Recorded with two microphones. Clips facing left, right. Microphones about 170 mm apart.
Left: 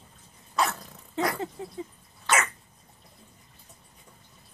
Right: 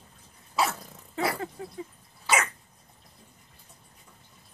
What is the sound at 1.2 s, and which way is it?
Dog, 25° left (ahead or behind).